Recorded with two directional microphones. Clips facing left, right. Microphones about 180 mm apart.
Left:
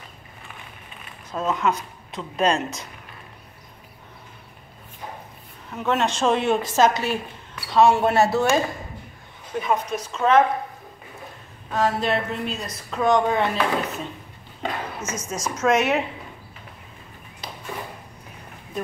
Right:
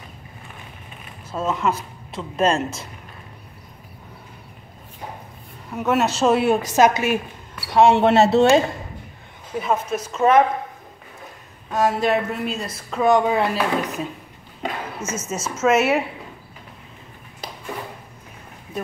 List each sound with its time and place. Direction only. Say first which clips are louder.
1.3 s speech: right 1 dB; 5° right (ahead or behind)
5.7 s speech: right 3 dB; 10° right (ahead or behind)
9.6 s speech: right 1 dB; 5° right (ahead or behind)
11.7 s speech: right 3 dB; 10° right (ahead or behind)